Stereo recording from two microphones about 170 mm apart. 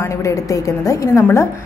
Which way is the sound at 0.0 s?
20° left (ahead or behind).